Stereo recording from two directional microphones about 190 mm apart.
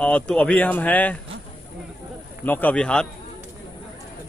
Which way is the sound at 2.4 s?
10° left (ahead or behind).